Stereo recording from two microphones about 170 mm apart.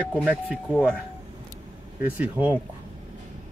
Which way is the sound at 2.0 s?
10° right (ahead or behind).